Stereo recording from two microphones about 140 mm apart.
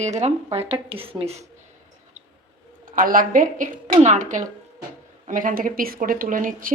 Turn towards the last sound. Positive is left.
turn(degrees=-75)  # may be behind; listen again after turning